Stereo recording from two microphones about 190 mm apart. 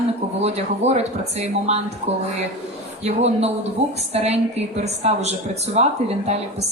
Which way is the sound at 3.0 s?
35° right (ahead or behind).